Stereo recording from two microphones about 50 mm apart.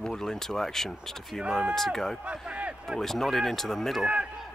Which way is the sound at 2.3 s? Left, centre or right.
Right.